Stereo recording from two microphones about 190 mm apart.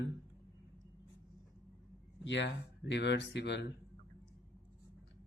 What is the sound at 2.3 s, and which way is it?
Speech, 70° left (ahead or behind).